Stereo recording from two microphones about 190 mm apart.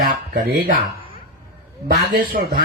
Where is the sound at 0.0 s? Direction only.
50° right (ahead or behind).